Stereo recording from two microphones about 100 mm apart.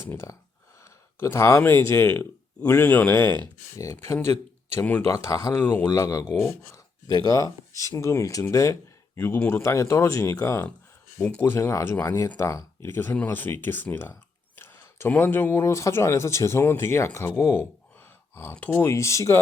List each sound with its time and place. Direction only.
0.0 s speech: 25° left (ahead or behind)
5.5 s speech: 20° left (ahead or behind)
5.9 s speech: 35° left (ahead or behind)
7.1 s speech: 40° left (ahead or behind)
11.2 s speech: 10° left (ahead or behind)
11.4 s speech: 25° left (ahead or behind)
18.9 s speech: 30° left (ahead or behind)